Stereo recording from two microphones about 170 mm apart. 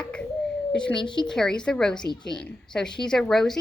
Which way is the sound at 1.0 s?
30° left (ahead or behind).